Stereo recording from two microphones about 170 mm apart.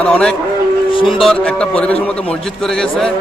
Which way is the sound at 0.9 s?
30° left (ahead or behind).